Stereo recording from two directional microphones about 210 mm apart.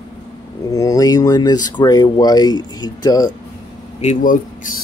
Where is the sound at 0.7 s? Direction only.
15° left (ahead or behind).